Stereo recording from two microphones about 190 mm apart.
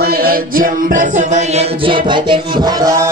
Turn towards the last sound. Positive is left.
turn(degrees=-20)  # may be behind; listen again after turning